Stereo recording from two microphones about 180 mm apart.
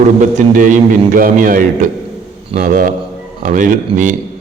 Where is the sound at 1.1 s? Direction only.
50° right (ahead or behind).